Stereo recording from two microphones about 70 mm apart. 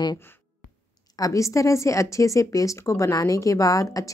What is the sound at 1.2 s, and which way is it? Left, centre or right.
A woman's voice, left.